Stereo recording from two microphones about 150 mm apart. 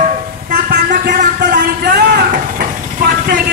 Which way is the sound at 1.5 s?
90° right.